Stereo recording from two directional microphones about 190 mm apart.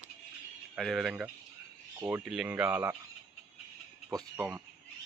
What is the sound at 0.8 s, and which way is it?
Speech, centre (ahead or behind).